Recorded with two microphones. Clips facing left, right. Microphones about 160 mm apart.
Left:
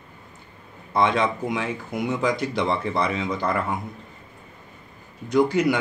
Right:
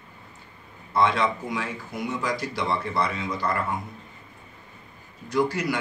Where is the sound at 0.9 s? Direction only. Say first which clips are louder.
Left 1 dB; 20° left (ahead or behind).